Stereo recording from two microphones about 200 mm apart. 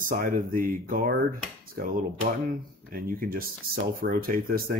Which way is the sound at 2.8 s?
45° right (ahead or behind).